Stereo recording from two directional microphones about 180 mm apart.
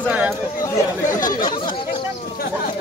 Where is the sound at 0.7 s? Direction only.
20° left (ahead or behind).